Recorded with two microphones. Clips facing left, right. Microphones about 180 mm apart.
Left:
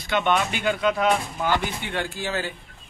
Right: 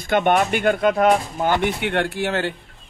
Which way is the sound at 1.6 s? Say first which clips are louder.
Right 7 dB; 65° right (ahead or behind).